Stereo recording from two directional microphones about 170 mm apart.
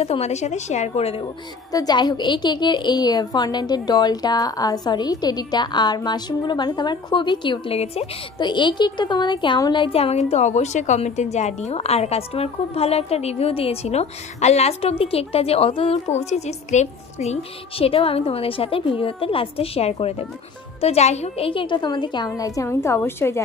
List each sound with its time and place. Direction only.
0.0 s a woman's voice: 35° left (ahead or behind)
1.7 s a woman's voice: 20° left (ahead or behind)